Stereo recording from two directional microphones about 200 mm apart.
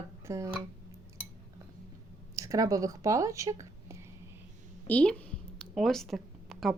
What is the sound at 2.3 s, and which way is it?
Speech, 15° right (ahead or behind).